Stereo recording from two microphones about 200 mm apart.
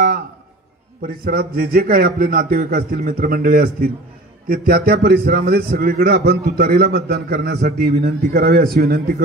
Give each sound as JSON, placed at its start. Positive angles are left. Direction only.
{"t": 1.0, "sound": "a man's voice", "side_deg": -50}